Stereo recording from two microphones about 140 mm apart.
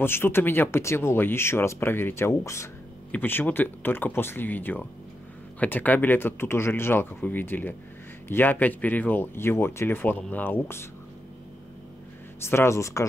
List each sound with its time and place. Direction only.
0.0 s speech: 15° left (ahead or behind)
12.4 s speech: 20° left (ahead or behind)